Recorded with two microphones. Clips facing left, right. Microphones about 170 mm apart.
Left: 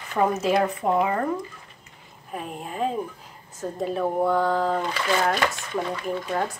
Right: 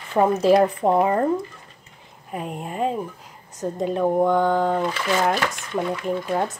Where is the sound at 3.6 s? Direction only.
15° right (ahead or behind).